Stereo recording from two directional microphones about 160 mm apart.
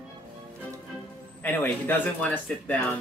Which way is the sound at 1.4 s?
10° left (ahead or behind).